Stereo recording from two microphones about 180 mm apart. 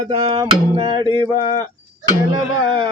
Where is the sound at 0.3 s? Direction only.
25° right (ahead or behind).